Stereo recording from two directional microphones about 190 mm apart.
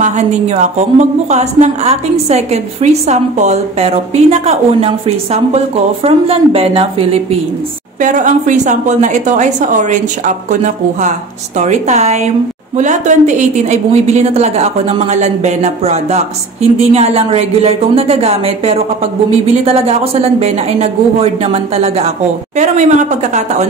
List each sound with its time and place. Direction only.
0.0 s a woman's voice: 35° right (ahead or behind)
8.0 s a woman's voice: 45° right (ahead or behind)